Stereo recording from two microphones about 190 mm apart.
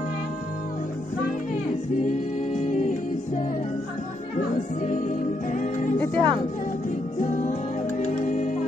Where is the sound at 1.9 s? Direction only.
40° left (ahead or behind).